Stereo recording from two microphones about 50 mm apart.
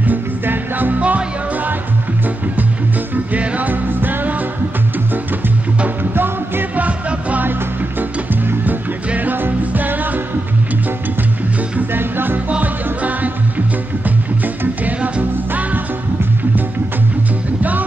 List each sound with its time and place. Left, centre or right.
0.0 s music: right
3.3 s music: right
6.1 s music: right
6.8 s music: right
8.6 s music: right
11.9 s music: right
12.4 s music: right
17.6 s music: right